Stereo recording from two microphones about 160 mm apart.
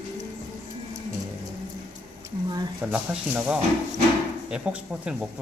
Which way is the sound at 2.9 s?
10° right (ahead or behind).